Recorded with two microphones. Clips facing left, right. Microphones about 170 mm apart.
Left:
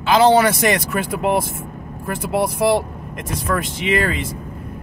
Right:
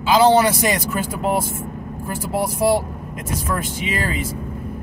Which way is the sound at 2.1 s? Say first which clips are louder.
Left 3 dB; 60° left (ahead or behind).